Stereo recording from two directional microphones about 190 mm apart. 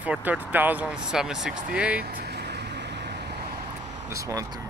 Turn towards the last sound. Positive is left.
turn(degrees=-15)  # may be behind; listen again after turning